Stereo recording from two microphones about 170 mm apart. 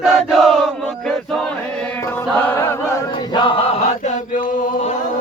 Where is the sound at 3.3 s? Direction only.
30° left (ahead or behind).